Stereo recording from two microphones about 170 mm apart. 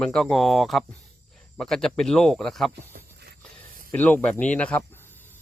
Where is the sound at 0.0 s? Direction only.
5° left (ahead or behind).